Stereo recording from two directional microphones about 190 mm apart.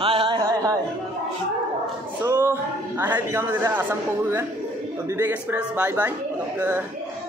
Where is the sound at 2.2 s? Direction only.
10° right (ahead or behind).